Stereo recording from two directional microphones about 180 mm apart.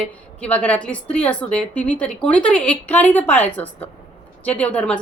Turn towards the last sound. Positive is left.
turn(degrees=5)  # may be behind; listen again after turning